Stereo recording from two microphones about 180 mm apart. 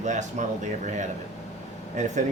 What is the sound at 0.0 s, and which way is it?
Speech, 40° right (ahead or behind).